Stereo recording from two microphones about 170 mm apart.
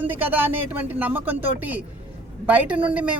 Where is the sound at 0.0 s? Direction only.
10° right (ahead or behind).